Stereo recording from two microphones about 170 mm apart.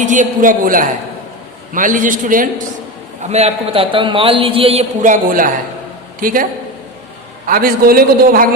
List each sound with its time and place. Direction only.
0.0 s a man's voice: 50° right (ahead or behind)
3.2 s a man's voice: 40° right (ahead or behind)
7.4 s a man's voice: 60° right (ahead or behind)